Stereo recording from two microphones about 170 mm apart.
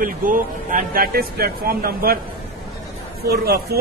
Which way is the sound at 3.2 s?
65° right (ahead or behind).